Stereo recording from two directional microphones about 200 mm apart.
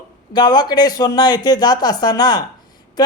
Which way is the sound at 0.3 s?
20° left (ahead or behind).